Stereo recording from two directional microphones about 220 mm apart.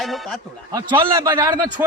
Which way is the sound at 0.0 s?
Centre (ahead or behind).